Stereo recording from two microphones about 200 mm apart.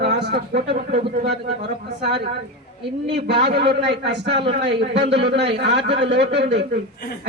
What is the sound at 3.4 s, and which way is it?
A man's voice, 55° right (ahead or behind).